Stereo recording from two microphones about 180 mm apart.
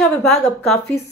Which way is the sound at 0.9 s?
60° left (ahead or behind).